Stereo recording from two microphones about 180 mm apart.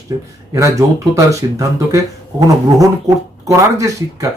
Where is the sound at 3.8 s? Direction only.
20° right (ahead or behind).